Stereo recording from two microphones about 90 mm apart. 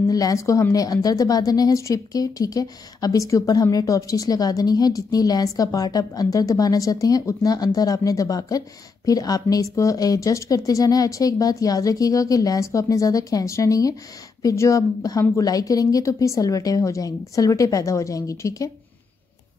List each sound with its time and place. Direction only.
0.1 s a woman's voice: 40° left (ahead or behind)